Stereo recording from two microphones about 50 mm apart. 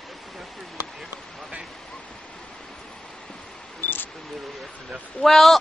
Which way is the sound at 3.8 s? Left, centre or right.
Left.